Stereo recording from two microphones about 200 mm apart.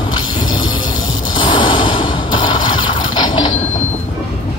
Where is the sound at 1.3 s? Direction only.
25° left (ahead or behind).